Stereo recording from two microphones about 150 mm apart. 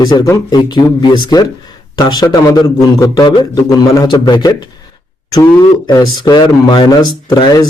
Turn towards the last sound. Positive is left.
turn(degrees=25)  # may be behind; listen again after turning